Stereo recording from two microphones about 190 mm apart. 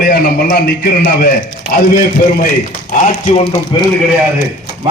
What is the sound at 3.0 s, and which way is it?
Speech, 35° left (ahead or behind).